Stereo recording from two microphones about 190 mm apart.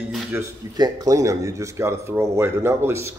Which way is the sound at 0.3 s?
20° right (ahead or behind).